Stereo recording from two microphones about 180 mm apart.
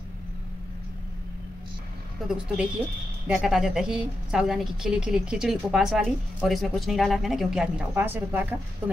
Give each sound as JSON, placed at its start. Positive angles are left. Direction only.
{"t": 2.2, "sound": "a woman's voice", "side_deg": -5}